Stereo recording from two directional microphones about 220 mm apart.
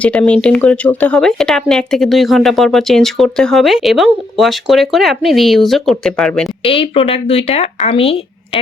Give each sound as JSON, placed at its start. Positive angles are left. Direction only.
{"t": 0.0, "sound": "speech", "side_deg": 5}
{"t": 6.7, "sound": "speech", "side_deg": 25}